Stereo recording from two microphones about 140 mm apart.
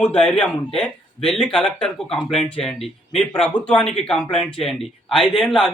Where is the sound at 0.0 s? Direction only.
5° left (ahead or behind).